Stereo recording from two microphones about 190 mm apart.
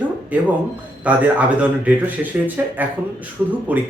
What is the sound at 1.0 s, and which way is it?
Speech, 5° right (ahead or behind).